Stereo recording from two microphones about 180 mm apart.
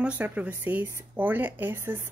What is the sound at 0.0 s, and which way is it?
Speech, 5° right (ahead or behind).